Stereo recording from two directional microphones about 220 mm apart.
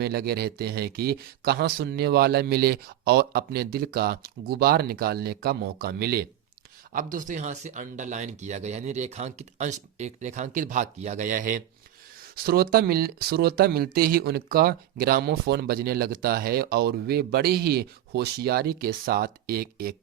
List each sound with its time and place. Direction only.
0.0 s speech: 45° right (ahead or behind)